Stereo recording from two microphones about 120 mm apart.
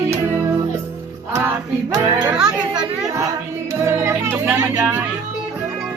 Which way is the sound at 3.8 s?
25° right (ahead or behind).